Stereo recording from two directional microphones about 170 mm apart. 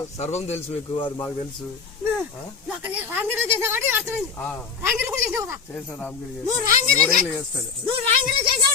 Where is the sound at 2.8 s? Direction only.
10° right (ahead or behind).